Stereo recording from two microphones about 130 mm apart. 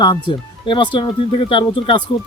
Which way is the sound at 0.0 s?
35° left (ahead or behind).